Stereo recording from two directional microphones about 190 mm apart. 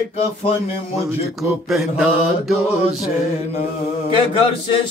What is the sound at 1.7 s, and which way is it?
Mantra, 5° right (ahead or behind).